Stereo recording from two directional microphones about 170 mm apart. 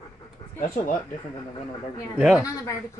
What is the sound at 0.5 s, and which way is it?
Speech, 50° left (ahead or behind).